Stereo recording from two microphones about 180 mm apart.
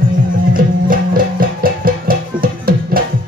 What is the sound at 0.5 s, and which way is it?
Music, 50° right (ahead or behind).